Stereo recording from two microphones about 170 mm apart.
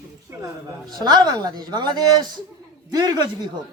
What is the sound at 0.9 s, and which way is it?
Speech, 25° right (ahead or behind).